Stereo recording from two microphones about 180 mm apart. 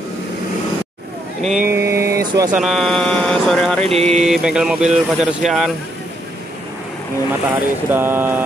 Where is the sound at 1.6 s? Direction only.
15° right (ahead or behind).